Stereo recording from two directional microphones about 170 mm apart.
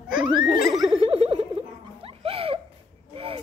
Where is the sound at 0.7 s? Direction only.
Centre (ahead or behind).